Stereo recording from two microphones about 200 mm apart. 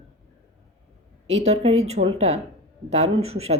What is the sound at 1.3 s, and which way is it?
A woman's voice, 30° right (ahead or behind).